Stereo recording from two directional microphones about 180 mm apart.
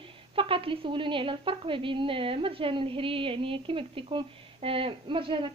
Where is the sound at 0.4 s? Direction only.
30° right (ahead or behind).